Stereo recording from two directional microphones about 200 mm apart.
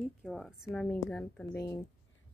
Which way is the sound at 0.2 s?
Centre (ahead or behind).